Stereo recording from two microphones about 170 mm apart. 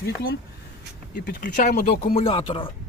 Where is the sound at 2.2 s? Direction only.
35° left (ahead or behind).